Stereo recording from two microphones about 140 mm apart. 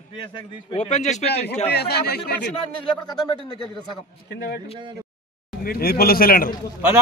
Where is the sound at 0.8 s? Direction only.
55° left (ahead or behind).